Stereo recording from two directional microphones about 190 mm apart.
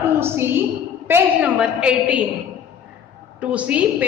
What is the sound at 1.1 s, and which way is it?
A woman's voice, 10° right (ahead or behind).